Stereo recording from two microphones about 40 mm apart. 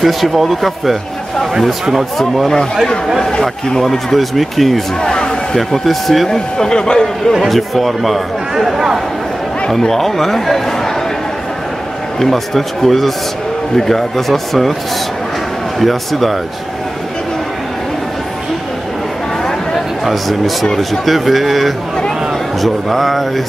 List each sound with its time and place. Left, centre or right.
0.0 s a man's voice: centre
2.1 s a man's voice: centre
3.2 s speech: centre
3.8 s a man's voice: centre
5.1 s a sound: centre
5.9 s speech: centre
7.3 s a man's voice: centre
9.7 s speech: centre
12.2 s a man's voice: centre
15.8 s a man's voice: centre
19.7 s a sound: centre
20.7 s a man's voice: centre